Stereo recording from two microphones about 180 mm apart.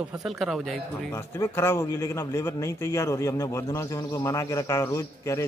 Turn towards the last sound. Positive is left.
turn(degrees=15)  # may be behind; listen again after turning